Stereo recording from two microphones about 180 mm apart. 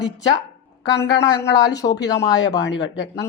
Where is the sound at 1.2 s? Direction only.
20° left (ahead or behind).